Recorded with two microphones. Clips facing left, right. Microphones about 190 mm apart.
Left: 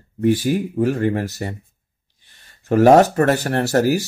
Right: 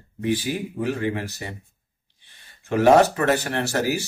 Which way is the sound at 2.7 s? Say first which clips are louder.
Left 4 dB; 45° left (ahead or behind).